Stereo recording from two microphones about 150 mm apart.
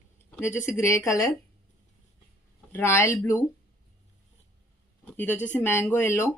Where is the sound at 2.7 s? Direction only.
15° left (ahead or behind).